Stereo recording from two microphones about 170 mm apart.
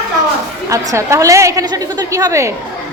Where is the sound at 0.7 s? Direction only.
15° right (ahead or behind).